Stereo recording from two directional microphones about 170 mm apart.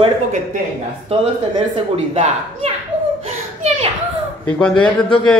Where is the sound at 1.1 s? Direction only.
35° right (ahead or behind).